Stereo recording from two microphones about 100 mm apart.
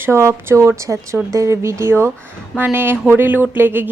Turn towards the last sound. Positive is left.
turn(degrees=-20)  # may be behind; listen again after turning